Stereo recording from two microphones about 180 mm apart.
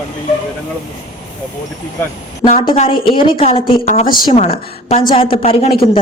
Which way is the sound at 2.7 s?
35° left (ahead or behind).